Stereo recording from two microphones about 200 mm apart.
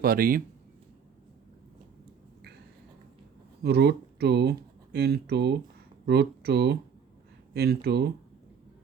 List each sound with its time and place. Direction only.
0.0 s speech: 45° right (ahead or behind)
3.6 s speech: 55° right (ahead or behind)